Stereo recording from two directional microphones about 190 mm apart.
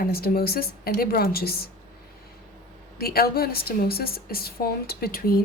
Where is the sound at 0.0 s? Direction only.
55° left (ahead or behind).